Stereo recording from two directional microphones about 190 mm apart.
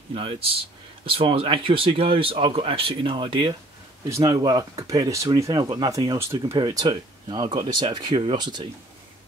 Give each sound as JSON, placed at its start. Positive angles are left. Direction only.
{"t": 0.1, "sound": "speech", "side_deg": -30}